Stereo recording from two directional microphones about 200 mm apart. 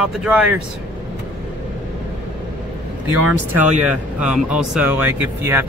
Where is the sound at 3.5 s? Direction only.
5° right (ahead or behind).